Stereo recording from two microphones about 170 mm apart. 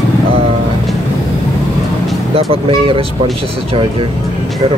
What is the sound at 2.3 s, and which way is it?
Speech, 30° right (ahead or behind).